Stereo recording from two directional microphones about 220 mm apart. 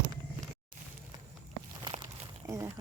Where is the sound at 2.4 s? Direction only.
15° right (ahead or behind).